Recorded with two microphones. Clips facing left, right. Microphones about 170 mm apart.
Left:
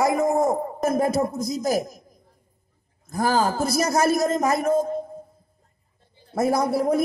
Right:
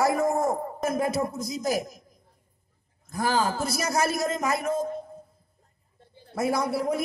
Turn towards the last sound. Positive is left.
turn(degrees=40)  # may be behind; listen again after turning